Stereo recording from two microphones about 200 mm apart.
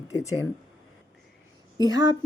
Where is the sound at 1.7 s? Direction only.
20° right (ahead or behind).